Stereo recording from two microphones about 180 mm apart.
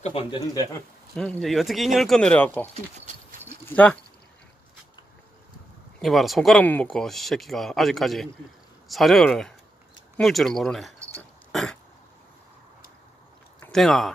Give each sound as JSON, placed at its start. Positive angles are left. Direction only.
{"t": 0.0, "sound": "speech", "side_deg": 30}
{"t": 1.1, "sound": "speech", "side_deg": 5}
{"t": 3.7, "sound": "speech", "side_deg": 5}
{"t": 5.9, "sound": "speech", "side_deg": 0}
{"t": 11.5, "sound": "throat clearing", "side_deg": 0}
{"t": 13.7, "sound": "speech", "side_deg": 0}